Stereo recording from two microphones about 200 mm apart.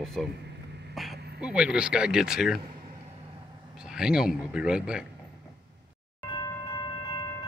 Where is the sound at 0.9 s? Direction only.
Centre (ahead or behind).